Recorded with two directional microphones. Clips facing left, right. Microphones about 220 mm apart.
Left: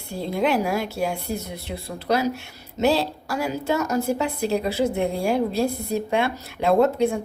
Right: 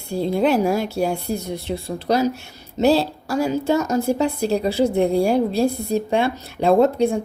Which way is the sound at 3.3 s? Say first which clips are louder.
Right 6 dB; 25° right (ahead or behind).